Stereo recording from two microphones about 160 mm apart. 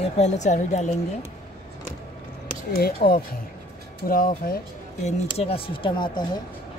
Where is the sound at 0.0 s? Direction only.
45° left (ahead or behind).